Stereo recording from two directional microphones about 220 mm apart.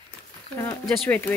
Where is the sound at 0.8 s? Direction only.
Centre (ahead or behind).